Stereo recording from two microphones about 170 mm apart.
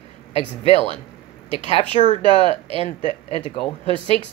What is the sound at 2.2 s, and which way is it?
Speech, 30° right (ahead or behind).